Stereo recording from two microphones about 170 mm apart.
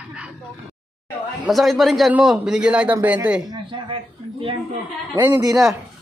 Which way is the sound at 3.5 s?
30° right (ahead or behind).